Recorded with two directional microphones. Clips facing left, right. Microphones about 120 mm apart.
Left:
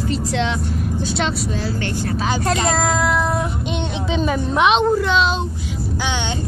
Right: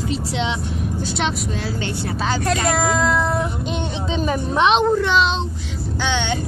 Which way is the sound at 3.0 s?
10° left (ahead or behind).